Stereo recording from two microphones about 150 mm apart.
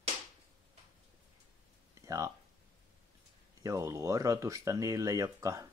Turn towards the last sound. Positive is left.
turn(degrees=-20)  # may be behind; listen again after turning